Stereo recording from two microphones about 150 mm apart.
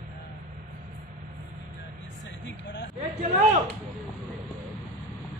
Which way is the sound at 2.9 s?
45° right (ahead or behind).